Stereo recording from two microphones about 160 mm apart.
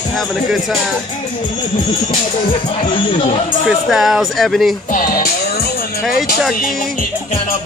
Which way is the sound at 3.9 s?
Centre (ahead or behind).